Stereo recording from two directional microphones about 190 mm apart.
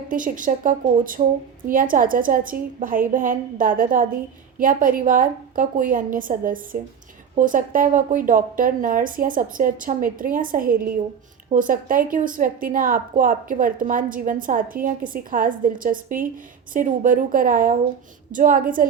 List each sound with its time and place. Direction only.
0.1 s a woman's voice: 45° right (ahead or behind)